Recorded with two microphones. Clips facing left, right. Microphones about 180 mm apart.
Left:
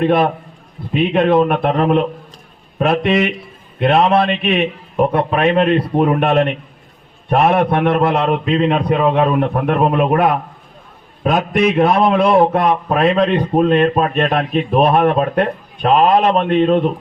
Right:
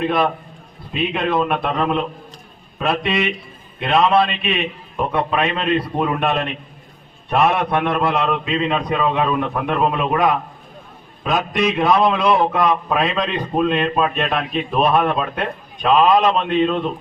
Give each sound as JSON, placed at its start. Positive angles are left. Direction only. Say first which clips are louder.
{"t": 0.0, "sound": "a man's voice", "louder": "left 5 dB", "side_deg": 55}